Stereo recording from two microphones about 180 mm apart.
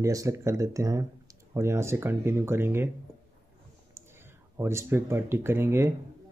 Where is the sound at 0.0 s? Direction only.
15° right (ahead or behind).